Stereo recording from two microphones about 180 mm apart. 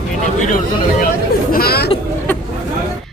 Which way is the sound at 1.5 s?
60° left (ahead or behind).